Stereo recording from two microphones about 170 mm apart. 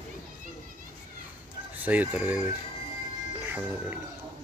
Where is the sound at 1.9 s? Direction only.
10° right (ahead or behind).